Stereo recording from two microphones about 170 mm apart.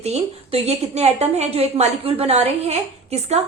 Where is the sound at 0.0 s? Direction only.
40° right (ahead or behind).